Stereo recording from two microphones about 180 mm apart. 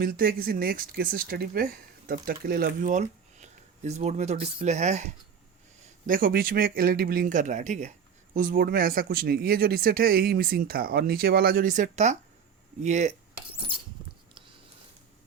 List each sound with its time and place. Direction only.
0.0 s speech: 55° right (ahead or behind)
6.1 s a man's voice: 50° right (ahead or behind)